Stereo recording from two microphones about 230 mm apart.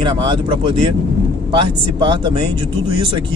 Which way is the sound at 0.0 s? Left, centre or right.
Right.